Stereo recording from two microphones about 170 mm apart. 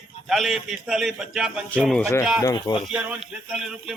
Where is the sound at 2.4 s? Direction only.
20° left (ahead or behind).